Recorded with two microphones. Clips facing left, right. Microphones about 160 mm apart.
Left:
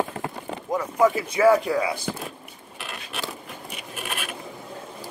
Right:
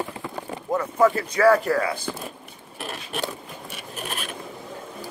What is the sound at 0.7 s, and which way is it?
A man's voice, 10° left (ahead or behind).